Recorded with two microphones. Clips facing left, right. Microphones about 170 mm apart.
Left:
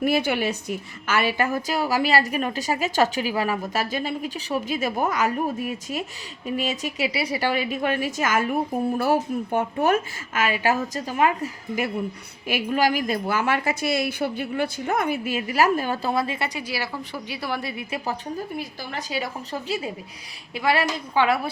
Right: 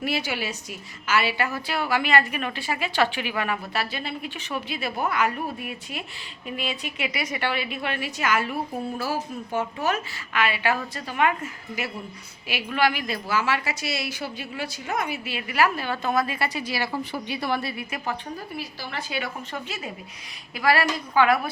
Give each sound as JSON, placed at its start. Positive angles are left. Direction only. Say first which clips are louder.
{"t": 0.0, "sound": "a woman's voice", "louder": "left 6 dB", "side_deg": 50}
{"t": 9.0, "sound": "a woman's voice", "louder": "left 7 dB", "side_deg": 60}
{"t": 12.5, "sound": "a woman's voice", "louder": "left 2 dB", "side_deg": 45}
{"t": 16.1, "sound": "a woman's voice", "louder": "even", "side_deg": 25}
{"t": 16.6, "sound": "speech", "louder": "right 2 dB", "side_deg": 10}
{"t": 17.6, "sound": "speech", "louder": "even", "side_deg": 15}
{"t": 17.9, "sound": "a woman's voice", "louder": "left 3 dB", "side_deg": 35}
{"t": 20.6, "sound": "a woman's voice", "louder": "even", "side_deg": 20}